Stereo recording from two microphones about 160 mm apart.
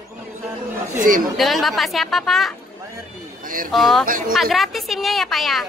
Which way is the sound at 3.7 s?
Centre (ahead or behind).